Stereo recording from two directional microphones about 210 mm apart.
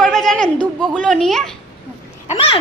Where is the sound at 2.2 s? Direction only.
30° left (ahead or behind).